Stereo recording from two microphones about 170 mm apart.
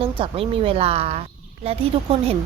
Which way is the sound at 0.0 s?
35° right (ahead or behind).